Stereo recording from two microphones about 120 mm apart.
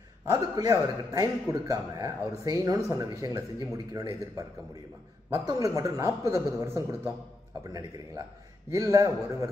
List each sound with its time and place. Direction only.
0.3 s a man's voice: 30° right (ahead or behind)
5.5 s a man's voice: 30° right (ahead or behind)